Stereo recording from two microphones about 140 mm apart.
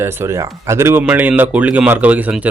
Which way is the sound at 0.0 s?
20° right (ahead or behind).